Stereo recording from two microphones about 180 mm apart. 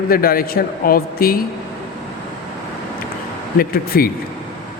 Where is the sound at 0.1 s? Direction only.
55° left (ahead or behind).